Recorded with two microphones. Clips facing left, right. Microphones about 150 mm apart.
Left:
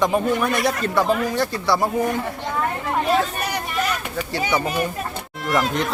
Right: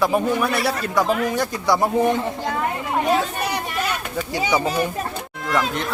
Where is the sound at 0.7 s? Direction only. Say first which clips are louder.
Left 1 dB; 15° right (ahead or behind).